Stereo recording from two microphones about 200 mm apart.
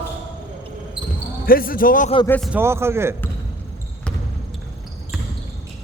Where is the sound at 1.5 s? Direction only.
45° left (ahead or behind).